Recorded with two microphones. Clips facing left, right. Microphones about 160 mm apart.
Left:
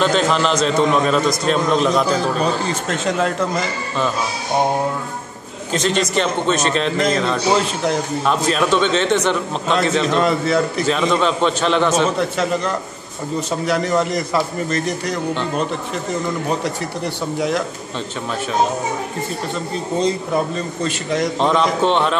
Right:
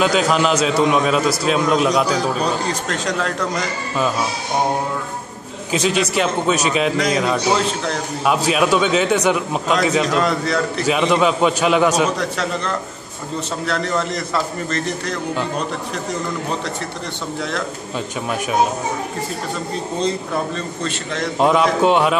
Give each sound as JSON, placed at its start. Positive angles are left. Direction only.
{"t": 0.0, "sound": "a man's voice", "side_deg": -5}
{"t": 5.7, "sound": "speech", "side_deg": -5}
{"t": 8.5, "sound": "speech", "side_deg": -10}
{"t": 10.0, "sound": "a man's voice", "side_deg": 5}
{"t": 10.9, "sound": "speech", "side_deg": -10}
{"t": 12.2, "sound": "a man's voice", "side_deg": 5}
{"t": 17.4, "sound": "a man's voice", "side_deg": 10}
{"t": 20.5, "sound": "a man's voice", "side_deg": 10}
{"t": 21.4, "sound": "speech", "side_deg": -10}